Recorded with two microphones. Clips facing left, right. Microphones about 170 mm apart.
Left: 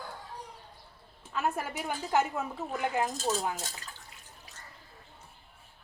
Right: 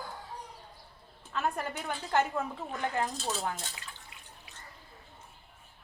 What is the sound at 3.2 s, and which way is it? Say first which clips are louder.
Speech: left 3 dB; 40° left (ahead or behind).